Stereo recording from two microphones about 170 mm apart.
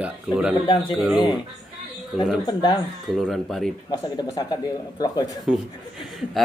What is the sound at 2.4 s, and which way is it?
Speech, 25° left (ahead or behind).